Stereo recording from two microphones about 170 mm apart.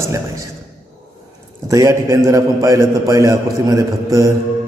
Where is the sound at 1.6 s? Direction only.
20° right (ahead or behind).